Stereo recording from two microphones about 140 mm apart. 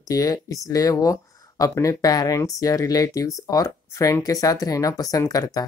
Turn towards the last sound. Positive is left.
turn(degrees=25)  # may be behind; listen again after turning